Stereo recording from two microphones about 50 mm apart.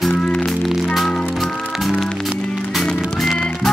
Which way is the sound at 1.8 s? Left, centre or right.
Centre.